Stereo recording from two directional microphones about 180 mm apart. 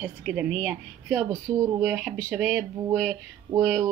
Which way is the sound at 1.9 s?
5° right (ahead or behind).